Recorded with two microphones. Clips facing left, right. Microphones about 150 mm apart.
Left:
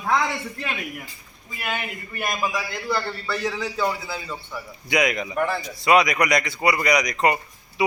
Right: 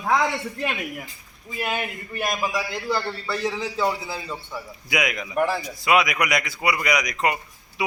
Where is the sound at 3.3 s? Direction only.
25° right (ahead or behind).